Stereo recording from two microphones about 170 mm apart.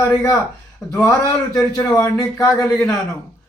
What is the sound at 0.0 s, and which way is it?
Speech, 15° left (ahead or behind).